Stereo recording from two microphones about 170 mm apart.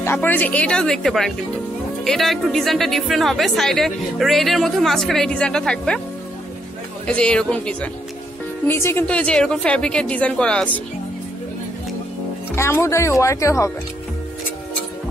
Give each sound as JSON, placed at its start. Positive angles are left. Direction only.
{"t": 0.0, "sound": "a woman's voice", "side_deg": 10}
{"t": 7.1, "sound": "a woman's voice", "side_deg": 5}
{"t": 12.5, "sound": "a woman's voice", "side_deg": 15}